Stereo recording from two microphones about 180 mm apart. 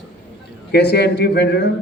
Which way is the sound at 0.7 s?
65° left (ahead or behind).